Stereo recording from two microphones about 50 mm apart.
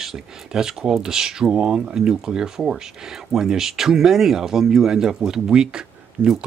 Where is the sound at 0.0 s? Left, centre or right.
Centre.